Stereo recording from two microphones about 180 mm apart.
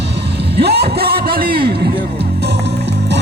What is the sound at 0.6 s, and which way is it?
A man's voice, 65° right (ahead or behind).